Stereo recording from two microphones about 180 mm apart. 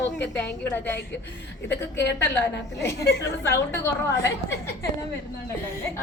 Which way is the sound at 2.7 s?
15° left (ahead or behind).